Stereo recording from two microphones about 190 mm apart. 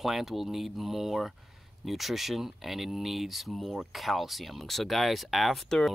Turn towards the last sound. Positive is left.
turn(degrees=0)  # may be behind; listen again after turning